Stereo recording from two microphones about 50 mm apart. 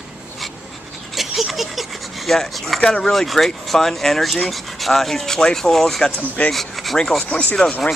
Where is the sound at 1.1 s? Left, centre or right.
Centre.